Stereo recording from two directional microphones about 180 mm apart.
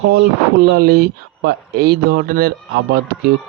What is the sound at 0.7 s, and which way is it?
Speech, 60° right (ahead or behind).